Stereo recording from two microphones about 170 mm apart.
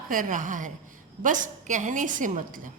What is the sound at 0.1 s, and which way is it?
A woman's voice, 50° right (ahead or behind).